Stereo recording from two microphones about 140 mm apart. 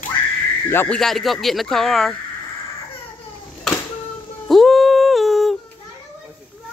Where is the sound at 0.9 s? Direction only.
Centre (ahead or behind).